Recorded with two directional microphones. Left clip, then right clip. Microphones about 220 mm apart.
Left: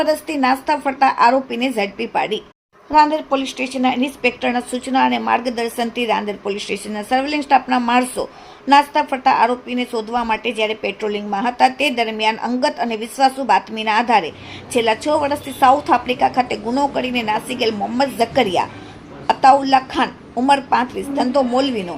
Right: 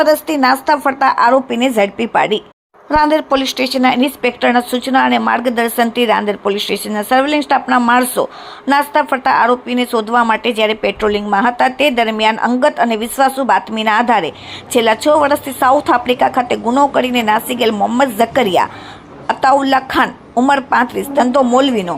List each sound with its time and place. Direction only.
0.0 s a woman's voice: 10° right (ahead or behind)